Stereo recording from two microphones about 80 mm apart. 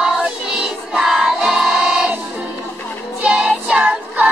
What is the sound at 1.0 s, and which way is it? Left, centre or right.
Music, centre.